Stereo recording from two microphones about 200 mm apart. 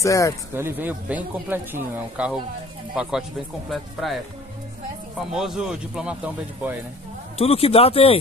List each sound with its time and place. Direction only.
0.0 s speech: 15° left (ahead or behind)
0.6 s speech: 10° right (ahead or behind)
5.3 s speech: 5° right (ahead or behind)
7.3 s speech: 30° left (ahead or behind)